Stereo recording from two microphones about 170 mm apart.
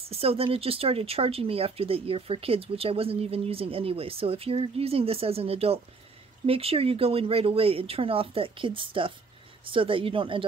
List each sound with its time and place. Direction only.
0.1 s speech: 35° right (ahead or behind)